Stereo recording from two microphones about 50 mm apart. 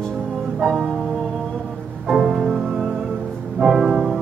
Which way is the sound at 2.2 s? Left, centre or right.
Centre.